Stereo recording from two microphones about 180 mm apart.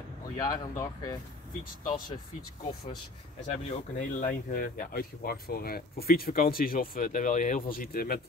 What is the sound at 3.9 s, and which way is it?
Speech, 50° left (ahead or behind).